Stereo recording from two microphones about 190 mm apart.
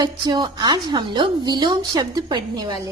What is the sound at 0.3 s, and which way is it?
A woman's voice, 20° right (ahead or behind).